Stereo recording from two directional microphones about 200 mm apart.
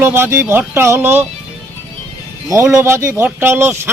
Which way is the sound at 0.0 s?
10° right (ahead or behind).